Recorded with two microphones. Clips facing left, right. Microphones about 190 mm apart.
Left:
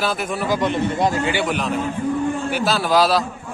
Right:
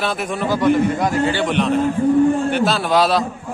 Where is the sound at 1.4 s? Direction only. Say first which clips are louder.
Right 5 dB; centre (ahead or behind).